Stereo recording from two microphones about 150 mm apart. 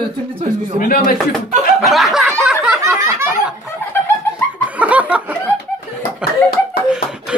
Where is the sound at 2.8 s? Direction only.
20° right (ahead or behind).